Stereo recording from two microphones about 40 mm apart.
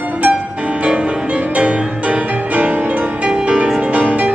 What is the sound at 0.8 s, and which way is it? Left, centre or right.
Music, right.